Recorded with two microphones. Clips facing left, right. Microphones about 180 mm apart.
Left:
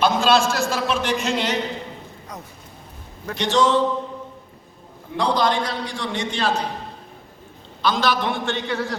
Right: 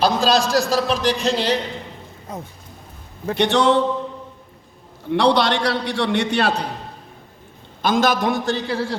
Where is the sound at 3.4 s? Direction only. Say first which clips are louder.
Right 2 dB; 60° right (ahead or behind).